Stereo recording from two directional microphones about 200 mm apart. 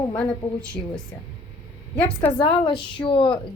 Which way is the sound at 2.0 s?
10° left (ahead or behind).